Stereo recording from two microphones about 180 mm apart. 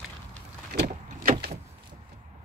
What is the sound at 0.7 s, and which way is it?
Vehicle, 65° right (ahead or behind).